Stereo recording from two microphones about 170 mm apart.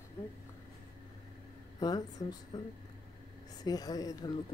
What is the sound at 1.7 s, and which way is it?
Speech, 25° left (ahead or behind).